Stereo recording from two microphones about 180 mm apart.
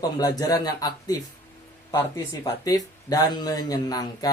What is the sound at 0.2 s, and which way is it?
Speech, 20° left (ahead or behind).